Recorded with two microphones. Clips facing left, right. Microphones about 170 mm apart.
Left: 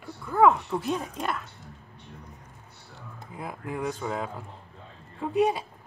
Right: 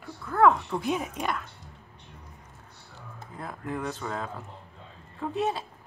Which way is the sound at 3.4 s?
10° left (ahead or behind).